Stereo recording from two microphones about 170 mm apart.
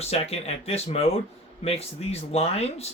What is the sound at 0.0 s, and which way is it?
Speech, 35° left (ahead or behind).